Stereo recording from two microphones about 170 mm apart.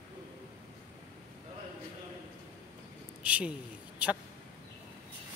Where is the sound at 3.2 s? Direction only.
5° right (ahead or behind).